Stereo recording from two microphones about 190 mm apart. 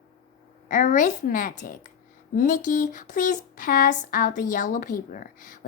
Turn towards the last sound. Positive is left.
turn(degrees=45)  # may be behind; listen again after turning